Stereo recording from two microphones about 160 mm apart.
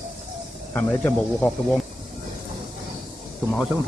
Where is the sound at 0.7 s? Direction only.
10° left (ahead or behind).